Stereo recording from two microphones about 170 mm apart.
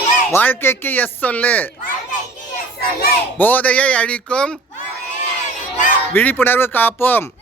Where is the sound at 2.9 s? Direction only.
60° left (ahead or behind).